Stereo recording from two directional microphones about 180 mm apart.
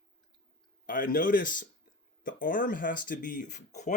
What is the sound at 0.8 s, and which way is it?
Speech, 50° left (ahead or behind).